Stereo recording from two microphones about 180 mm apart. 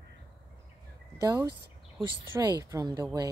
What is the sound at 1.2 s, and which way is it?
Speech, 20° right (ahead or behind).